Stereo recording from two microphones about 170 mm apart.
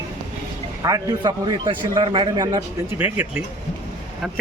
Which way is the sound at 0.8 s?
20° right (ahead or behind).